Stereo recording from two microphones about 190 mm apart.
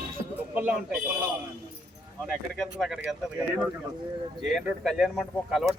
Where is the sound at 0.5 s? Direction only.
5° right (ahead or behind).